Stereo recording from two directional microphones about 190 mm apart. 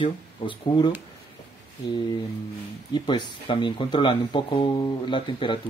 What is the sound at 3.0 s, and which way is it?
Speech, 25° left (ahead or behind).